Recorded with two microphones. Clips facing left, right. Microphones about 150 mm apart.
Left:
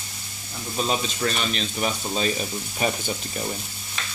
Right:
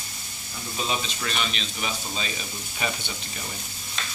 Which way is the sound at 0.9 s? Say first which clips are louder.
Left 5 dB; 40° left (ahead or behind).